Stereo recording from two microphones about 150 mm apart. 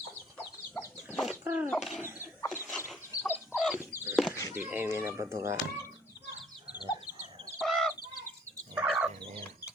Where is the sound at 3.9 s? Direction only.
15° right (ahead or behind).